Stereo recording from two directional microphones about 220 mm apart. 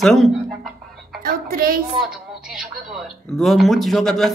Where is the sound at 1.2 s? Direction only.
40° right (ahead or behind).